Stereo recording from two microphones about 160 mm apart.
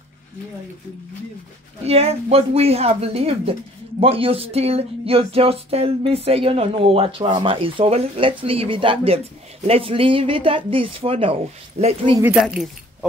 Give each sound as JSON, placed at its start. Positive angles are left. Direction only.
{"t": 1.9, "sound": "speech", "side_deg": -40}
{"t": 12.4, "sound": "speech", "side_deg": -5}